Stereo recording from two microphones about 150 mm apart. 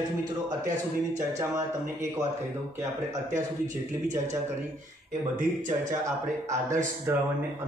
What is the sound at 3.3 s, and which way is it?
Speech, 55° right (ahead or behind).